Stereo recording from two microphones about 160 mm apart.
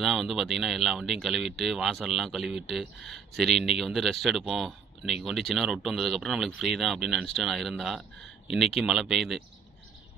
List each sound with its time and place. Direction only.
0.0 s speech: centre (ahead or behind)